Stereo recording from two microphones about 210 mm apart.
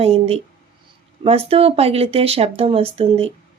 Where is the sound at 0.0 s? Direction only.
30° right (ahead or behind).